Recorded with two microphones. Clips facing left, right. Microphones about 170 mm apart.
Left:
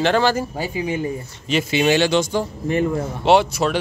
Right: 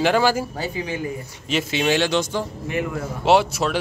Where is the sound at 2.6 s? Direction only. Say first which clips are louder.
Left 9 dB; 35° left (ahead or behind).